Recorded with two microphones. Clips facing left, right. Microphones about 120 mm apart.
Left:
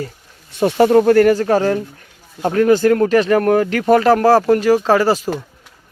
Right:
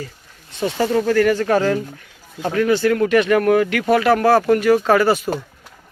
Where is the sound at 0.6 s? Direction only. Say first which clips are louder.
Left 7 dB; 60° left (ahead or behind).